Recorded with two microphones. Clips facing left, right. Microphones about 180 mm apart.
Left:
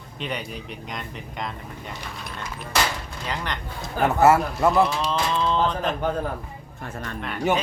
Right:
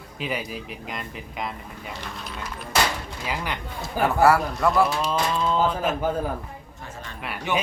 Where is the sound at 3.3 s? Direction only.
10° right (ahead or behind).